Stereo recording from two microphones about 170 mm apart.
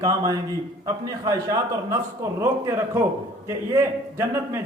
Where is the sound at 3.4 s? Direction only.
15° right (ahead or behind).